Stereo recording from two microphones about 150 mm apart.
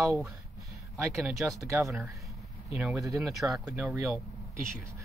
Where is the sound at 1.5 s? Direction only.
20° right (ahead or behind).